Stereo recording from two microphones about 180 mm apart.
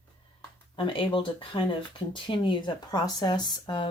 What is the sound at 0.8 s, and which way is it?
Speech, 30° left (ahead or behind).